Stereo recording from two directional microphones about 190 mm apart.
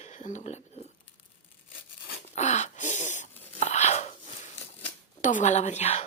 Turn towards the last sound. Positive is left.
turn(degrees=35)  # may be behind; listen again after turning